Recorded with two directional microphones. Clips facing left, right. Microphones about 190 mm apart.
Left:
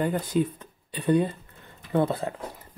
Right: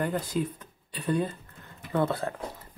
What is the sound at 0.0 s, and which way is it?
Speech, 20° left (ahead or behind).